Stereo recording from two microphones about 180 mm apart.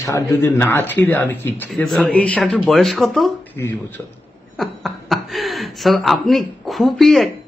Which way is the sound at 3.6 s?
15° left (ahead or behind).